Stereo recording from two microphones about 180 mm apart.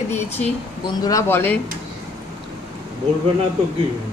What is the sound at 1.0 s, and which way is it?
Speech, 15° left (ahead or behind).